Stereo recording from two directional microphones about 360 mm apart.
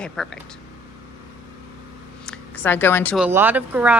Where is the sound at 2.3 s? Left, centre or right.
Centre.